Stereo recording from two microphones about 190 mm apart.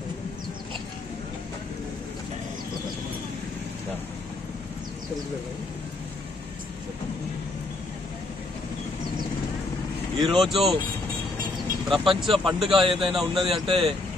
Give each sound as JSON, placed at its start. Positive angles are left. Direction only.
{"t": 10.2, "sound": "speech", "side_deg": 0}
{"t": 11.9, "sound": "speech", "side_deg": 0}
{"t": 12.6, "sound": "speech", "side_deg": -30}
{"t": 13.1, "sound": "speech", "side_deg": 0}
{"t": 13.5, "sound": "speech", "side_deg": -30}